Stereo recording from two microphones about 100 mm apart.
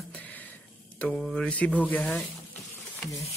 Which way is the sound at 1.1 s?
Centre (ahead or behind).